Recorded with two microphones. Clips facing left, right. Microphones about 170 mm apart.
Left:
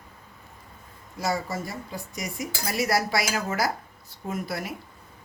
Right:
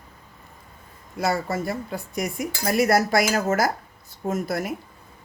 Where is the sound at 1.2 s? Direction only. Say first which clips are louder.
Right 4 dB; 60° right (ahead or behind).